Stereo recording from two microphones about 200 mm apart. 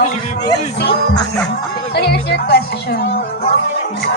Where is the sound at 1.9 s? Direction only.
55° left (ahead or behind).